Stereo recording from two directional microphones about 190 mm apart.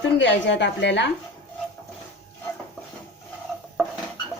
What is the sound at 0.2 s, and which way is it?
Speech, 70° left (ahead or behind).